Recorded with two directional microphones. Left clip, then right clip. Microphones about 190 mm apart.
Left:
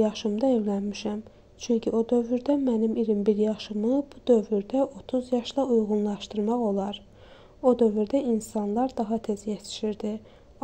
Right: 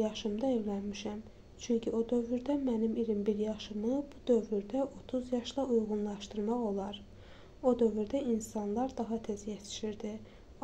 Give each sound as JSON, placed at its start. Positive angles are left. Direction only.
{"t": 0.0, "sound": "speech", "side_deg": 35}